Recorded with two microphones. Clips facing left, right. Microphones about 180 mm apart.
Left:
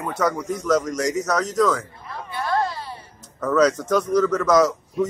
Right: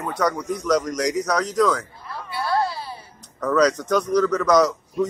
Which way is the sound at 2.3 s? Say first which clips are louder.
Even; 10° right (ahead or behind).